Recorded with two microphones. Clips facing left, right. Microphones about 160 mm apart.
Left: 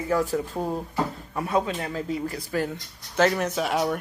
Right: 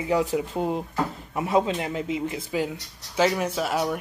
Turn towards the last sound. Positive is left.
turn(degrees=0)  # may be behind; listen again after turning